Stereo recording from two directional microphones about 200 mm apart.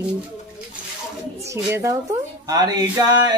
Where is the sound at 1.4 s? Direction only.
15° right (ahead or behind).